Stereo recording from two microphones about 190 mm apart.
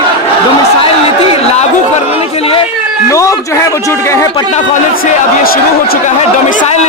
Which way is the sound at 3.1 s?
15° left (ahead or behind).